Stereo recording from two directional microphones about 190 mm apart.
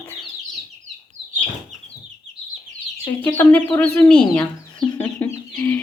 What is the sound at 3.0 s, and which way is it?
Chicken, 10° left (ahead or behind).